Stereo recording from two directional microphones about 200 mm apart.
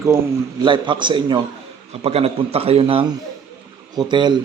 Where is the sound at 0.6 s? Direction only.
25° right (ahead or behind).